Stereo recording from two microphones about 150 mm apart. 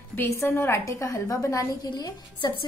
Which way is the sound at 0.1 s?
15° left (ahead or behind).